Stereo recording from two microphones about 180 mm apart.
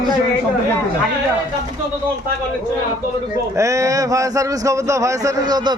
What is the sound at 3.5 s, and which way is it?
A man's voice, 15° right (ahead or behind).